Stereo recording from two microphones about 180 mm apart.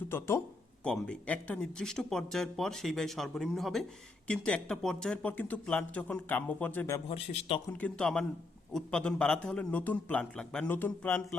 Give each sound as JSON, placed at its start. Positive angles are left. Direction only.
{"t": 0.1, "sound": "speech", "side_deg": 15}
{"t": 7.1, "sound": "speech", "side_deg": 30}
{"t": 7.7, "sound": "speech", "side_deg": 5}